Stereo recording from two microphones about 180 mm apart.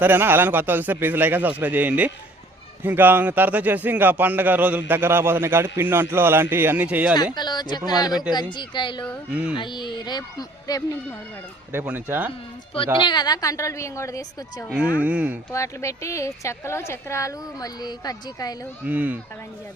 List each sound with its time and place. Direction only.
0.0 s a man's voice: 10° right (ahead or behind)
7.3 s a woman's voice: 25° left (ahead or behind)
9.3 s speech: 5° right (ahead or behind)
9.6 s a woman's voice: 25° left (ahead or behind)
11.7 s a man's voice: 10° right (ahead or behind)
13.0 s a woman's voice: 25° left (ahead or behind)
14.9 s a man's voice: 5° right (ahead or behind)
15.5 s a woman's voice: 15° left (ahead or behind)
18.9 s a man's voice: 10° right (ahead or behind)